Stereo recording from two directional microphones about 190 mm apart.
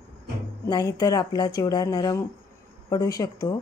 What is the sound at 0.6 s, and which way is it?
Speech, 20° left (ahead or behind).